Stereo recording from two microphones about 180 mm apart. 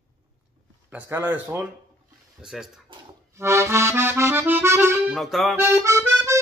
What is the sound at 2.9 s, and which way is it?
Accordion, 25° right (ahead or behind).